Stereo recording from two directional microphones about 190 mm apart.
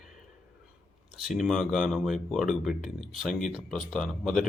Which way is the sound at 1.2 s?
Centre (ahead or behind).